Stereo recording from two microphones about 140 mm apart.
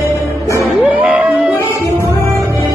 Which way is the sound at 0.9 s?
10° right (ahead or behind).